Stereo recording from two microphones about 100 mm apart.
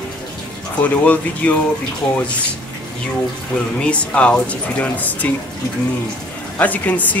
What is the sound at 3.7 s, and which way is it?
Speech, 10° left (ahead or behind).